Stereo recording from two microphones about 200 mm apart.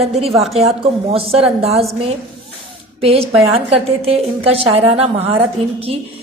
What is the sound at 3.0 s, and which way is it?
A woman's voice, 30° right (ahead or behind).